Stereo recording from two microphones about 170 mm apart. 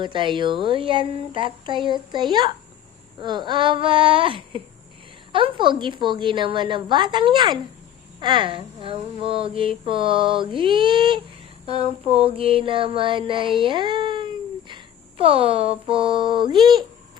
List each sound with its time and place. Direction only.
0.0 s speech: 30° right (ahead or behind)